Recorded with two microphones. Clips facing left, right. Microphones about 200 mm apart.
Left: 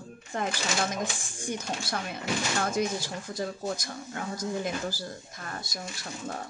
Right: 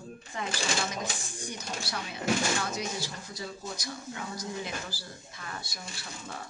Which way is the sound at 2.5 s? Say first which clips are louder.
Left 5 dB; 50° left (ahead or behind).